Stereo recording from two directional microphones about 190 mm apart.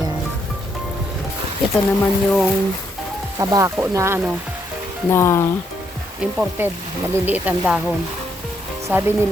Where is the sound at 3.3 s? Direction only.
15° right (ahead or behind).